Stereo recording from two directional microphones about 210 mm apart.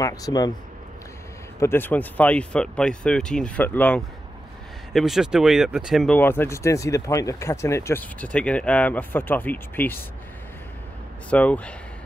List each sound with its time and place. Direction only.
0.0 s speech: 15° left (ahead or behind)
1.6 s speech: 10° left (ahead or behind)
11.2 s speech: 5° left (ahead or behind)